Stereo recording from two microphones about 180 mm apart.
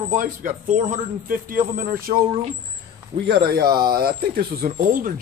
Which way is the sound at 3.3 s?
55° right (ahead or behind).